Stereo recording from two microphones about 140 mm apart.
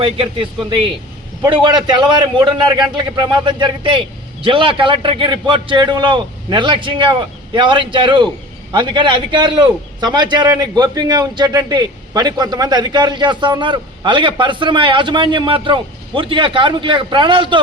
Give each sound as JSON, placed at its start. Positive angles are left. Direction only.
{"t": 0.0, "sound": "a man's voice", "side_deg": -40}